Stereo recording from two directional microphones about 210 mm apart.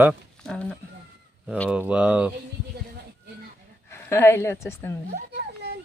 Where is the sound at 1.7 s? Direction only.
5° right (ahead or behind).